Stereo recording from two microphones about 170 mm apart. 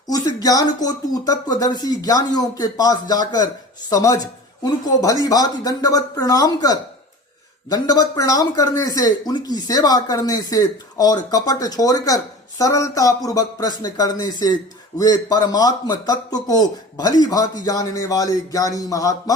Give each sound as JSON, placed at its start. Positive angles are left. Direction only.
{"t": 0.1, "sound": "speech", "side_deg": 20}